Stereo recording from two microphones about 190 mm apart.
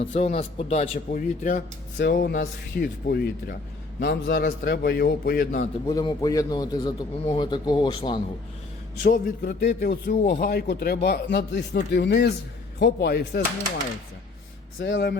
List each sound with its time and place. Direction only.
0.0 s a man's voice: 40° left (ahead or behind)
2.0 s speech: 55° left (ahead or behind)
5.9 s a man's voice: 20° left (ahead or behind)
9.0 s speech: 50° left (ahead or behind)
14.8 s speech: 65° left (ahead or behind)